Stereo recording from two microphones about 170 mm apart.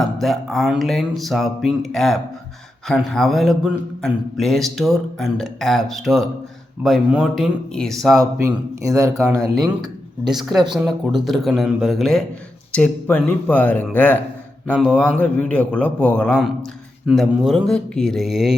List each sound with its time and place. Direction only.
0.0 s speech: centre (ahead or behind)
8.2 s a man's voice: 20° right (ahead or behind)
10.2 s a man's voice: centre (ahead or behind)